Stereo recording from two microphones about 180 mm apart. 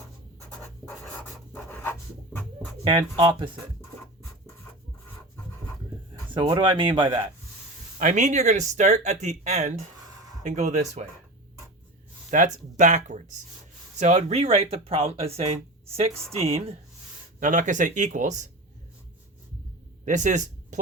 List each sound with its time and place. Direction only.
0.5 s writing: 5° left (ahead or behind)
2.8 s speech: 25° right (ahead or behind)
3.8 s scratch: 15° left (ahead or behind)
6.3 s speech: 25° right (ahead or behind)
7.9 s speech: 45° right (ahead or behind)
12.3 s speech: 45° right (ahead or behind)
17.4 s speech: 45° right (ahead or behind)
20.1 s speech: 45° right (ahead or behind)